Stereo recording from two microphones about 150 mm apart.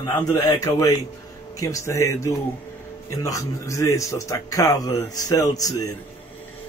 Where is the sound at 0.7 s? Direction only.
20° left (ahead or behind).